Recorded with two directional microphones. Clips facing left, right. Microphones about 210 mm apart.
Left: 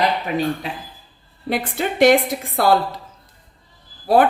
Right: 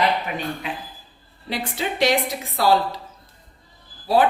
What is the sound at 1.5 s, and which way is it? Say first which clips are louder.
A woman's voice: left 4 dB; 55° left (ahead or behind).